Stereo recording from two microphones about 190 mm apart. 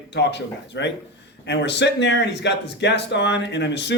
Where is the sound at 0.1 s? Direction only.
65° left (ahead or behind).